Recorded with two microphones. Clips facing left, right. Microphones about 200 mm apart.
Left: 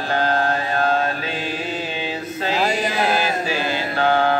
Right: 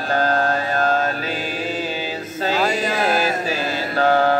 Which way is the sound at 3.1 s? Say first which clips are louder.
Right 1 dB; 40° right (ahead or behind).